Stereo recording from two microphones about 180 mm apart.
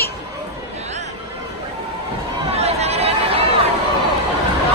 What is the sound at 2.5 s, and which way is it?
Chatter, 35° right (ahead or behind).